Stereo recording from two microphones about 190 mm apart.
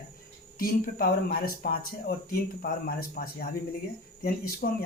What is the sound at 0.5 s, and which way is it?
Speech, 50° left (ahead or behind).